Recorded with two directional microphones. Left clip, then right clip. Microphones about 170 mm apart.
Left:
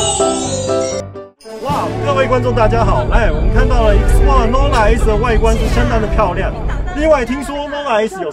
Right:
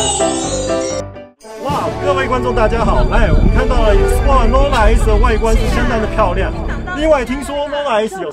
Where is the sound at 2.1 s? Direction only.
20° right (ahead or behind).